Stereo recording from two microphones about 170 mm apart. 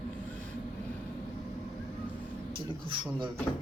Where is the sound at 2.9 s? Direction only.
30° right (ahead or behind).